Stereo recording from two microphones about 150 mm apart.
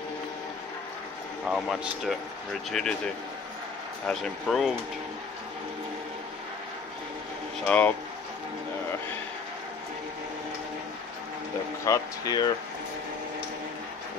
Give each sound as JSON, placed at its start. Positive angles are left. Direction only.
{"t": 1.5, "sound": "speech", "side_deg": 0}
{"t": 4.1, "sound": "speech", "side_deg": 0}
{"t": 7.6, "sound": "speech", "side_deg": 10}
{"t": 11.8, "sound": "speech", "side_deg": 25}